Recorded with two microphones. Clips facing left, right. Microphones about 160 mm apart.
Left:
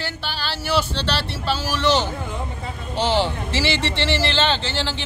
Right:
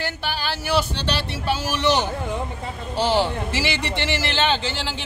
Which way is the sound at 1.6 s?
20° right (ahead or behind).